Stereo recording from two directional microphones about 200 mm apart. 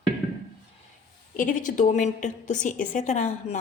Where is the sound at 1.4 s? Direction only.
40° left (ahead or behind).